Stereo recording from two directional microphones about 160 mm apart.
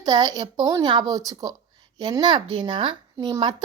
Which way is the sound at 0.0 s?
25° right (ahead or behind).